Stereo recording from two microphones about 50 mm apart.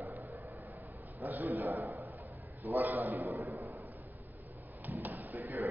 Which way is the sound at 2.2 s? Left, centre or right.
Right.